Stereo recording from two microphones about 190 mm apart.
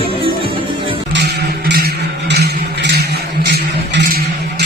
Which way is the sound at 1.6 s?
60° right (ahead or behind).